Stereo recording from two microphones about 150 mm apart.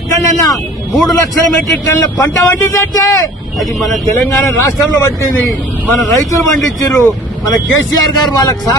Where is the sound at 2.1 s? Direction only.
20° left (ahead or behind).